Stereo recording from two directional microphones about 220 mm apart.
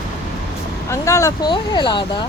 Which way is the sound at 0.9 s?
15° left (ahead or behind).